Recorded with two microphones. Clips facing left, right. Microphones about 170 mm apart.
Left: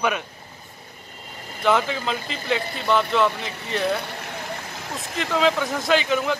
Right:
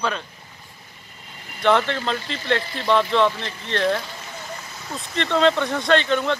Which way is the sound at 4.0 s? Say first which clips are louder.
Left 2 dB; 65° left (ahead or behind).